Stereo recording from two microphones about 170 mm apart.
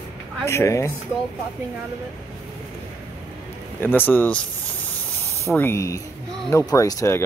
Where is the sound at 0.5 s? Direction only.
15° left (ahead or behind).